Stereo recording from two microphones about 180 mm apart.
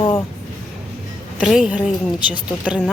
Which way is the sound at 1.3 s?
Centre (ahead or behind).